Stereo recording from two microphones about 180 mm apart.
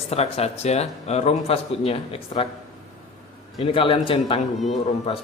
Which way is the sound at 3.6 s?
30° left (ahead or behind).